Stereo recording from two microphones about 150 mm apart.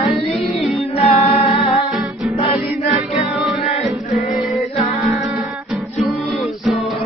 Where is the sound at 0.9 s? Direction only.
40° left (ahead or behind).